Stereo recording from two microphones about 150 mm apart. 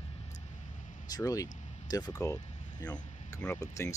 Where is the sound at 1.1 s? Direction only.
25° left (ahead or behind).